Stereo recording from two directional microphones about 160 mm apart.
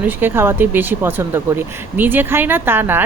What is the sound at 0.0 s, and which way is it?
A woman's voice, 15° right (ahead or behind).